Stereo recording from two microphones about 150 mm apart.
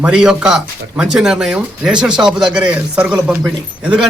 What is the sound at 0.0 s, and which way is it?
Speech, 5° right (ahead or behind).